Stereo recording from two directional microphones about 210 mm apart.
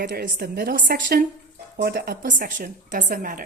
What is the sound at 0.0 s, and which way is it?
A woman's voice, 45° right (ahead or behind).